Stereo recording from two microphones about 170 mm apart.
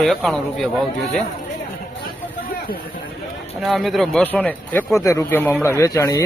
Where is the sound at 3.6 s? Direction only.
Centre (ahead or behind).